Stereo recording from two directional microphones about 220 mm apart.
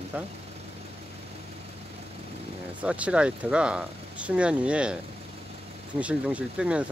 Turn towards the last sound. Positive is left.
turn(degrees=-5)  # may be behind; listen again after turning